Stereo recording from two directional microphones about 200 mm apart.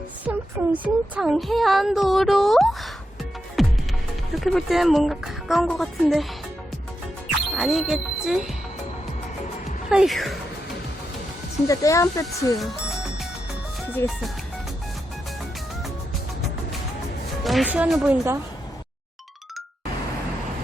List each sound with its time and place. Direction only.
0.3 s speech: 5° right (ahead or behind)
3.6 s music: centre (ahead or behind)
4.4 s speech: centre (ahead or behind)
7.3 s speech: centre (ahead or behind)
9.9 s speech: centre (ahead or behind)
11.7 s speech: 15° left (ahead or behind)
17.4 s speech: centre (ahead or behind)